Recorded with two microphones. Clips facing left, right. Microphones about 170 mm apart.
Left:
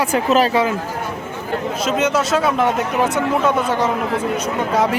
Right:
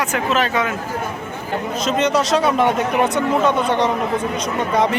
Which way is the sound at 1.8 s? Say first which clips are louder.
Right 1 dB; 5° left (ahead or behind).